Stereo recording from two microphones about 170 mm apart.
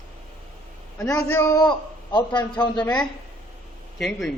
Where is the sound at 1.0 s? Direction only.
15° left (ahead or behind).